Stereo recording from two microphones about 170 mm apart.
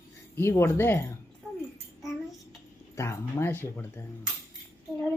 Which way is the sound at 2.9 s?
15° left (ahead or behind).